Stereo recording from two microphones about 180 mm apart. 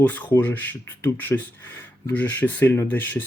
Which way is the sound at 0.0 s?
10° left (ahead or behind).